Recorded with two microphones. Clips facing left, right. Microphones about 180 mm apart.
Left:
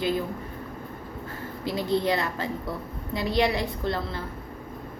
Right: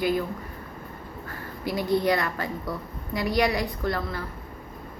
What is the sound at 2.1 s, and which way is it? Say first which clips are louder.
A woman's voice: right 1 dB; 20° left (ahead or behind).